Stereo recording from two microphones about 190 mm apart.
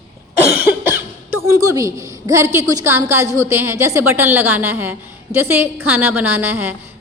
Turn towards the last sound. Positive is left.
turn(degrees=-10)  # may be behind; listen again after turning